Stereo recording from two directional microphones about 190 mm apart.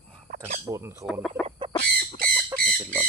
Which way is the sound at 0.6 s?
15° right (ahead or behind).